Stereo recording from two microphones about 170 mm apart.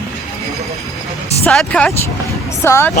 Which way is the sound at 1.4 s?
5° left (ahead or behind).